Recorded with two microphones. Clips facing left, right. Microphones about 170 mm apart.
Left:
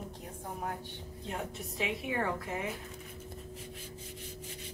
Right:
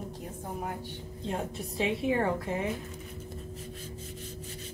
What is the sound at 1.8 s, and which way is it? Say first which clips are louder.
Speech: right 6 dB; 30° right (ahead or behind).